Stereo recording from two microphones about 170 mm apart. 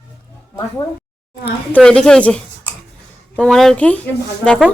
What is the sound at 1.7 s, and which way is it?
A woman's voice, 5° left (ahead or behind).